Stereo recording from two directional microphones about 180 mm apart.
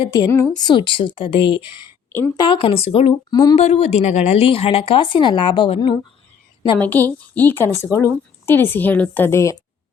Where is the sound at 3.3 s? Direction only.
20° left (ahead or behind).